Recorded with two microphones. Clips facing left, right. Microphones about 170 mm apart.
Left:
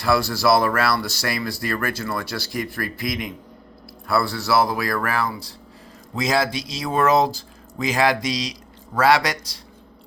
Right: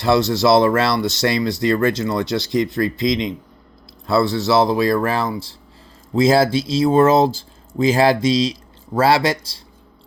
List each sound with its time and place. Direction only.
0.0 s speech: 20° right (ahead or behind)